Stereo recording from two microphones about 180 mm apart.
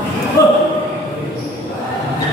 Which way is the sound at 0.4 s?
20° left (ahead or behind).